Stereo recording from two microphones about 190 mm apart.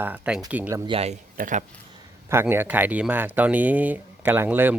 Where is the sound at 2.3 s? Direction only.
10° right (ahead or behind).